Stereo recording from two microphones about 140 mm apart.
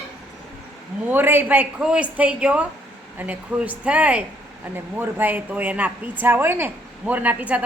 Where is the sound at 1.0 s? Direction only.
15° right (ahead or behind).